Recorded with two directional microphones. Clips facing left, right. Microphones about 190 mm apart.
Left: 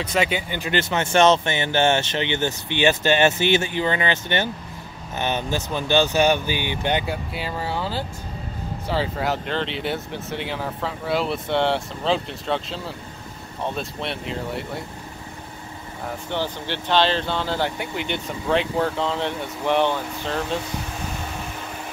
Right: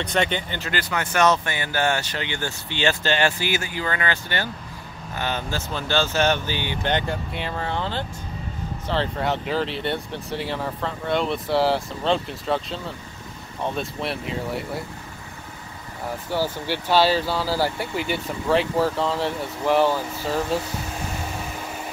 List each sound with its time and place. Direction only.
0.0 s speech: 5° left (ahead or behind)
16.3 s speech: 10° right (ahead or behind)